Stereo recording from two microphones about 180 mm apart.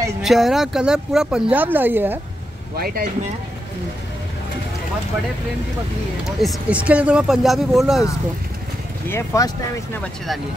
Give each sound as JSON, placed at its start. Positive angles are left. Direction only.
{"t": 0.2, "sound": "speech", "side_deg": 0}
{"t": 2.7, "sound": "speech", "side_deg": -55}
{"t": 6.2, "sound": "speech", "side_deg": -5}
{"t": 9.1, "sound": "speech", "side_deg": 15}